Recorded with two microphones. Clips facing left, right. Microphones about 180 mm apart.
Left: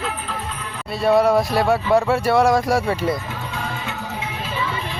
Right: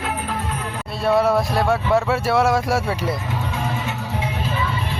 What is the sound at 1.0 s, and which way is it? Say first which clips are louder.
Speech: left 2 dB; centre (ahead or behind).